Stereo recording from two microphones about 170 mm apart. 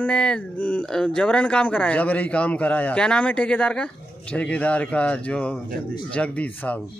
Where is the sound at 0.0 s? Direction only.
5° left (ahead or behind).